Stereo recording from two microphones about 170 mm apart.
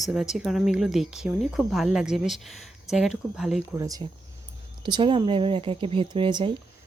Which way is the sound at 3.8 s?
20° right (ahead or behind).